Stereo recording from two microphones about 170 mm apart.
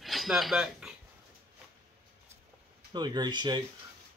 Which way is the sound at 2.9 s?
25° right (ahead or behind).